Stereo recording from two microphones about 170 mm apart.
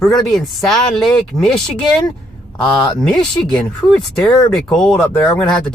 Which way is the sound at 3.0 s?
Centre (ahead or behind).